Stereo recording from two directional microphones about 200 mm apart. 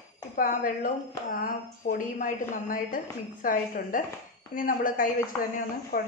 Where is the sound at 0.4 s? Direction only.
45° left (ahead or behind).